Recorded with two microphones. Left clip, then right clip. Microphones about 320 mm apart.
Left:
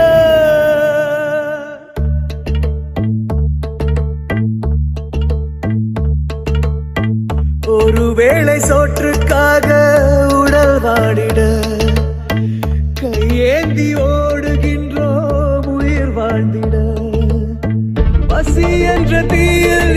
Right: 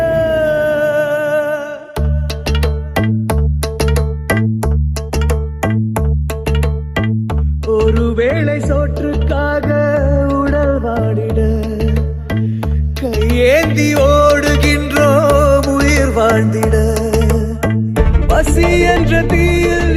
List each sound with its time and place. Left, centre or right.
0.0 s music: centre
2.5 s music: right
3.8 s music: right
5.1 s music: right
6.4 s music: centre
7.7 s music: centre; by 9.1 s left
9.2 s music: left; by 12.5 s centre
13.0 s music: centre; by 17.1 s right
17.1 s music: right; by 20.0 s centre